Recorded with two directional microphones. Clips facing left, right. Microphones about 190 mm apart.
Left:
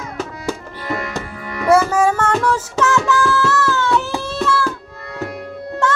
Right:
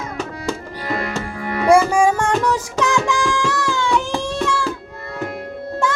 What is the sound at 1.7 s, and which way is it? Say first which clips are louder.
Music: even; 15° right (ahead or behind).